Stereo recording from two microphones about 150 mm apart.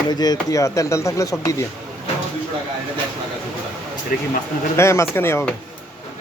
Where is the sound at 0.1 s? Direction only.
25° left (ahead or behind).